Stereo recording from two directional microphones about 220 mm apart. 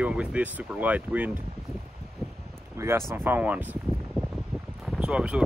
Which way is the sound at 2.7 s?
10° right (ahead or behind).